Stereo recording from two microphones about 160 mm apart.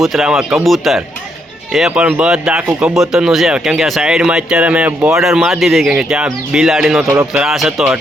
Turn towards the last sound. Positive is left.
turn(degrees=0)  # may be behind; listen again after turning